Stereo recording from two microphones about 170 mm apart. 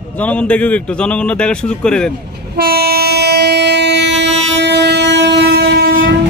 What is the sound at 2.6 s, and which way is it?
Train, 65° right (ahead or behind).